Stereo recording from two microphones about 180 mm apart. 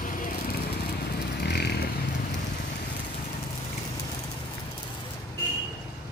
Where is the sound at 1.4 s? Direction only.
65° left (ahead or behind).